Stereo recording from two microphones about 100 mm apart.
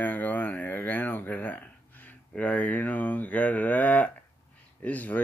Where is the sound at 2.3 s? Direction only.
15° left (ahead or behind).